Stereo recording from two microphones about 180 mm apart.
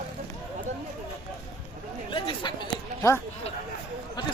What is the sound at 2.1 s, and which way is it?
Chatter, 25° left (ahead or behind).